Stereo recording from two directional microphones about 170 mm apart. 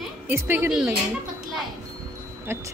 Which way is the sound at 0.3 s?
10° right (ahead or behind).